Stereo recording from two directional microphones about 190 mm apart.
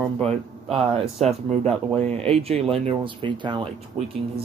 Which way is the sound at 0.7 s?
30° right (ahead or behind).